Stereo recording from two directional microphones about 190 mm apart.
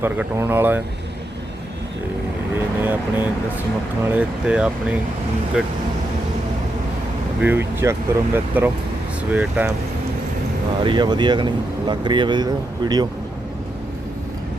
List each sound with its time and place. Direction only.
0.0 s speech: 10° right (ahead or behind)
2.8 s speech: 10° right (ahead or behind)
7.4 s speech: 10° right (ahead or behind)
10.8 s speech: 25° right (ahead or behind)